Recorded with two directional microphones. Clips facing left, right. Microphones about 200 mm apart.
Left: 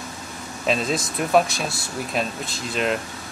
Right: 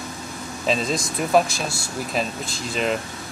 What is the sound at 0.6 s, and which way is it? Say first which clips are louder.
Speech: even; centre (ahead or behind).